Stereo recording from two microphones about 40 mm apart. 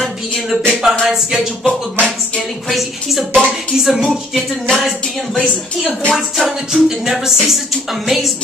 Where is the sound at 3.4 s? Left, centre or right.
Centre.